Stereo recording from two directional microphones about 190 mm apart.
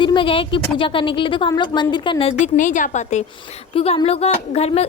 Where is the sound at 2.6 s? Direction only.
40° left (ahead or behind).